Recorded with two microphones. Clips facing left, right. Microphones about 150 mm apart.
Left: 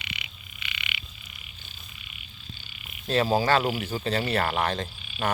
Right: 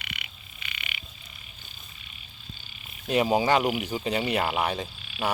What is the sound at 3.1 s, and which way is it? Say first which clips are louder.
Speech: even; 15° right (ahead or behind).